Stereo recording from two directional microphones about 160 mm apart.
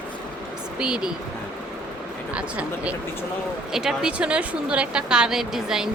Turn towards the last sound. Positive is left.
turn(degrees=-5)  # may be behind; listen again after turning